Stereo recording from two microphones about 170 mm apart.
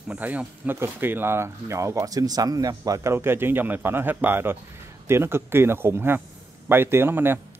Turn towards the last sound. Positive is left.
turn(degrees=-15)  # may be behind; listen again after turning